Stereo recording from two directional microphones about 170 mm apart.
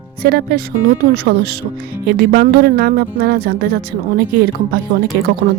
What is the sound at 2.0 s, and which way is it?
Speech, 65° right (ahead or behind).